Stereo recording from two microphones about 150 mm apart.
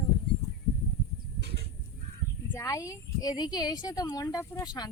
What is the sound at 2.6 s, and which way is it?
Speech, 20° left (ahead or behind).